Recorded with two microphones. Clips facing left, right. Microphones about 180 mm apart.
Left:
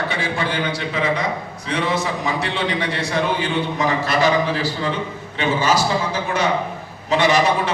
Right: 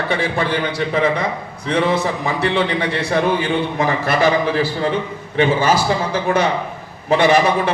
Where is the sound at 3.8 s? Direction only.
55° right (ahead or behind).